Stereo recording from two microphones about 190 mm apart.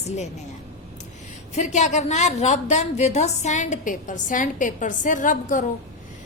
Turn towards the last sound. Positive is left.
turn(degrees=45)  # may be behind; listen again after turning